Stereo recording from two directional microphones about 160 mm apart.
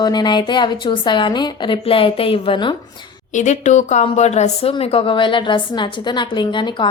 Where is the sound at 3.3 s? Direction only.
50° left (ahead or behind).